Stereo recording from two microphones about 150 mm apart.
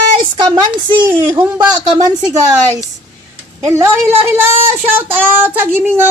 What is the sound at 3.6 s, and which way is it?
Speech, 20° right (ahead or behind).